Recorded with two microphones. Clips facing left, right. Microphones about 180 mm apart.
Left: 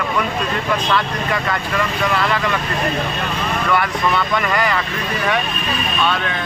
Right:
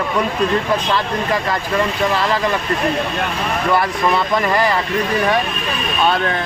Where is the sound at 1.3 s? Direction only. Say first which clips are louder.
Right 2 dB; 30° right (ahead or behind).